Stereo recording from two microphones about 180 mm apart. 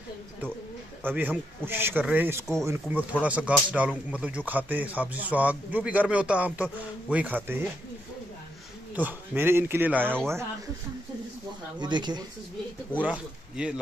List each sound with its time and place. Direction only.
1.0 s a man's voice: 10° right (ahead or behind)
8.9 s a man's voice: 10° right (ahead or behind)
11.8 s speech: 25° right (ahead or behind)
12.9 s a man's voice: 5° right (ahead or behind)